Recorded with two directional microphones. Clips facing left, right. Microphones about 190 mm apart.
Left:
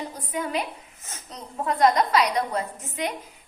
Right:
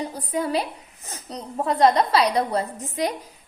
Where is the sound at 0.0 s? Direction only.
35° right (ahead or behind).